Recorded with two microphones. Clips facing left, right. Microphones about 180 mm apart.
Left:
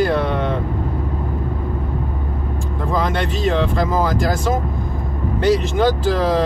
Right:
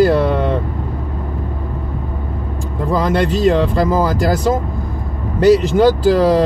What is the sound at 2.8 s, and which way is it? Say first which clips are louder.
Speech: right 5 dB; 40° right (ahead or behind).